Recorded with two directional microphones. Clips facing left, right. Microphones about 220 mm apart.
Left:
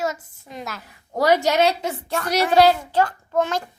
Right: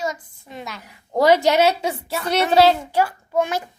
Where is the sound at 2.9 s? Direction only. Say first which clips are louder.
Even; 10° right (ahead or behind).